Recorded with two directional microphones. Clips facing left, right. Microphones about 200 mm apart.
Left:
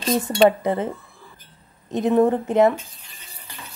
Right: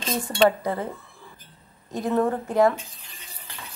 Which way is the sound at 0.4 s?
20° left (ahead or behind).